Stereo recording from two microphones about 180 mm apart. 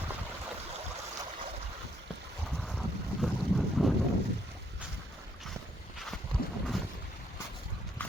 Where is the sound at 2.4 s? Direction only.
Centre (ahead or behind).